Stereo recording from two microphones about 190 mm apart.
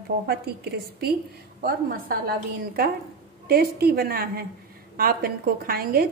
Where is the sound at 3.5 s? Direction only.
55° right (ahead or behind).